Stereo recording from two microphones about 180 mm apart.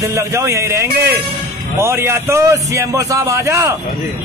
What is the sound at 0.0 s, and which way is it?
A man's voice, 15° right (ahead or behind).